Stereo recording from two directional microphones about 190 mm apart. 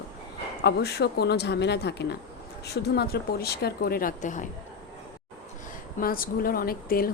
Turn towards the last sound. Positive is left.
turn(degrees=50)  # may be behind; listen again after turning